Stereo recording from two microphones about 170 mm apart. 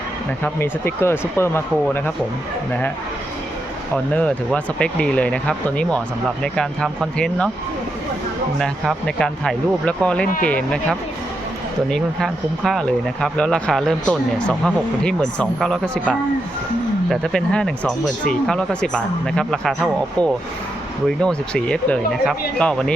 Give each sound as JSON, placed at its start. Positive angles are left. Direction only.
{"t": 0.4, "sound": "speech", "side_deg": 15}
{"t": 3.9, "sound": "speech", "side_deg": 5}
{"t": 8.5, "sound": "speech", "side_deg": 5}